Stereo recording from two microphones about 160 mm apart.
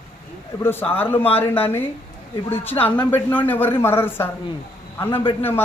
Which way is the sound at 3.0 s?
10° left (ahead or behind).